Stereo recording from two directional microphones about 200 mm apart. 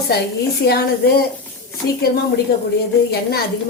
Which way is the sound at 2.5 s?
50° left (ahead or behind).